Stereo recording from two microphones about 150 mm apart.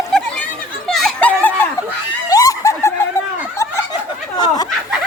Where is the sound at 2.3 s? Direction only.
25° left (ahead or behind).